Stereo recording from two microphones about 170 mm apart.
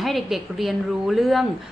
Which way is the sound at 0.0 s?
Centre (ahead or behind).